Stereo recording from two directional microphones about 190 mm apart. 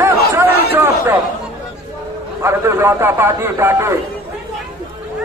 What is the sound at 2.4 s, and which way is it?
A man's voice, 15° right (ahead or behind).